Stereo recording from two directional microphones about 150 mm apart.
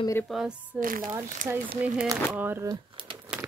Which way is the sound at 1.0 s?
25° right (ahead or behind).